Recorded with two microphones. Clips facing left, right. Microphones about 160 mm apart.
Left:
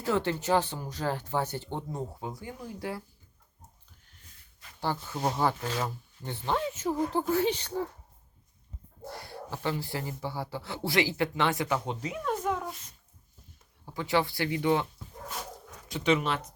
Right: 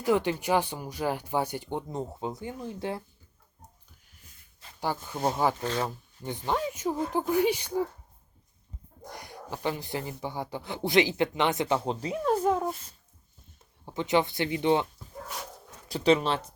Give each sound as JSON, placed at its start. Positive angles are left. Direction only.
{"t": 0.0, "sound": "speech", "side_deg": -15}
{"t": 4.6, "sound": "a sound", "side_deg": -30}
{"t": 5.0, "sound": "speech", "side_deg": -15}
{"t": 5.6, "sound": "speech", "side_deg": 5}
{"t": 6.2, "sound": "speech", "side_deg": -15}
{"t": 9.0, "sound": "speech", "side_deg": -15}
{"t": 13.8, "sound": "speech", "side_deg": -20}
{"t": 15.9, "sound": "speech", "side_deg": -35}